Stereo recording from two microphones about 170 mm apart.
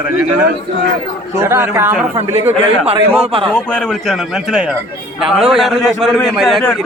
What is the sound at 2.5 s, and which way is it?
A man's voice, 40° right (ahead or behind).